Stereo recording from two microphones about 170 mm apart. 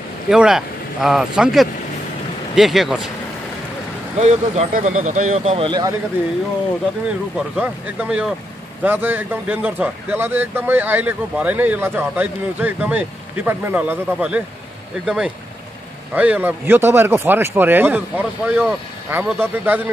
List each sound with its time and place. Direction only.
0.3 s speech: 5° right (ahead or behind)
4.2 s speech: 40° right (ahead or behind); by 5.9 s 25° right (ahead or behind)
7.5 s a man's voice: 5° right (ahead or behind)